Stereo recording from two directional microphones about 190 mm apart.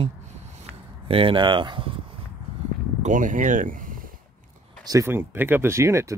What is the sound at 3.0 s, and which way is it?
Speech, 40° right (ahead or behind).